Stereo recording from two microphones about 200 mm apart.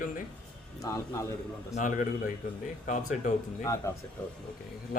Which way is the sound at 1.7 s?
40° left (ahead or behind).